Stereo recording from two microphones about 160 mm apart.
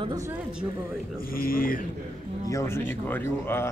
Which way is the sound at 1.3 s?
65° left (ahead or behind).